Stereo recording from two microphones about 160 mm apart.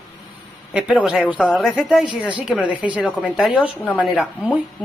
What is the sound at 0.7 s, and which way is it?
A woman's voice, 5° right (ahead or behind).